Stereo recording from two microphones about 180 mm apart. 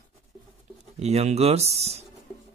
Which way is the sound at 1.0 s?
35° right (ahead or behind).